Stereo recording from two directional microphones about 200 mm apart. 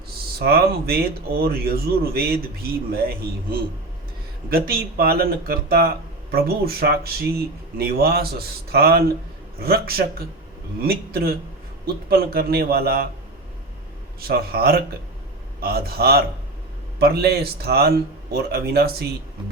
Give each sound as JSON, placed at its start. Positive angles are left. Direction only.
{"t": 0.4, "sound": "a man's voice", "side_deg": -50}
{"t": 4.4, "sound": "a man's voice", "side_deg": -50}
{"t": 14.2, "sound": "a man's voice", "side_deg": -50}